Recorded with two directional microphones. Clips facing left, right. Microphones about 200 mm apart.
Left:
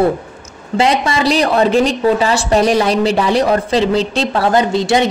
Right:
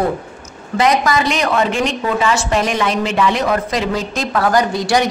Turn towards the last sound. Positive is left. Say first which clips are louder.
# left 2 dB
turn(degrees=25)  # may be behind; listen again after turning